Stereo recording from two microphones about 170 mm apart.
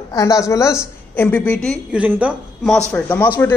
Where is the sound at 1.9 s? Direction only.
5° right (ahead or behind).